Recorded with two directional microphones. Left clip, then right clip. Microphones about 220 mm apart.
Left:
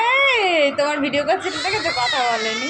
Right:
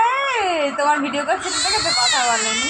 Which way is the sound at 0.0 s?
20° left (ahead or behind).